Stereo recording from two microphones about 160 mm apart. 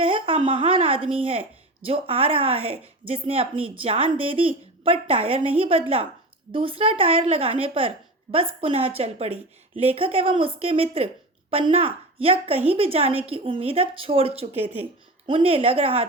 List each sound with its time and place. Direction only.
0.0 s a woman's voice: 35° right (ahead or behind)